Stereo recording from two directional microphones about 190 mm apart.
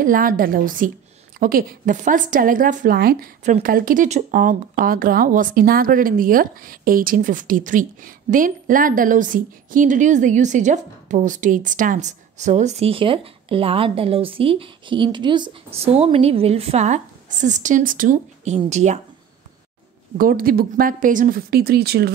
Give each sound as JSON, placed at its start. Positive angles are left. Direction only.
{"t": 0.0, "sound": "speech", "side_deg": -45}
{"t": 20.2, "sound": "speech", "side_deg": -50}